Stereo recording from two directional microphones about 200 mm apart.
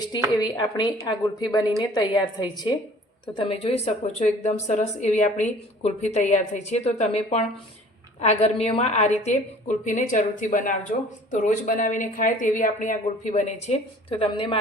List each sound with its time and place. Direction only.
0.3 s speech: 20° left (ahead or behind)
8.2 s speech: 30° left (ahead or behind)